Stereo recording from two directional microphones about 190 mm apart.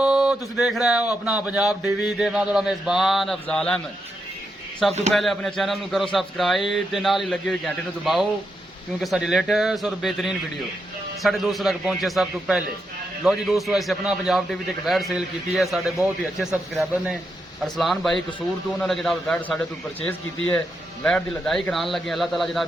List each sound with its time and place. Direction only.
0.0 s a man's voice: 5° right (ahead or behind)
4.8 s a man's voice: centre (ahead or behind)
21.0 s a man's voice: 5° left (ahead or behind)